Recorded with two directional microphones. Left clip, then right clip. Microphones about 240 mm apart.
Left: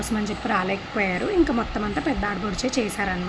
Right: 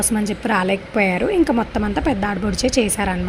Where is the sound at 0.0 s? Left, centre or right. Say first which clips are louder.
Right 5 dB; centre.